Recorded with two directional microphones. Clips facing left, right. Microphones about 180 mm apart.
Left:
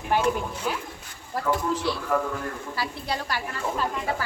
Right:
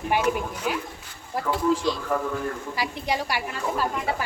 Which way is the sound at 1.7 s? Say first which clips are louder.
Right 1 dB; 15° right (ahead or behind).